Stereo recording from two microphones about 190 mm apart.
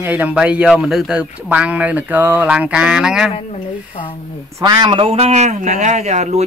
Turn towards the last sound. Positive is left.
turn(degrees=-35)  # may be behind; listen again after turning